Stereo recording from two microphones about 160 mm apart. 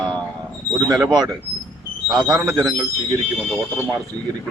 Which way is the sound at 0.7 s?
25° right (ahead or behind).